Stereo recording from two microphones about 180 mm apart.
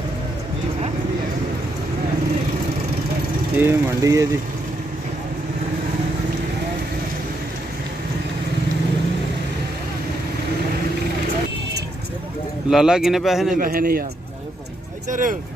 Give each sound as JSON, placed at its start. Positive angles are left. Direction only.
{"t": 3.5, "sound": "speech", "side_deg": -15}
{"t": 12.6, "sound": "a man's voice", "side_deg": -5}
{"t": 13.6, "sound": "a man's voice", "side_deg": -55}
{"t": 15.0, "sound": "speech", "side_deg": -45}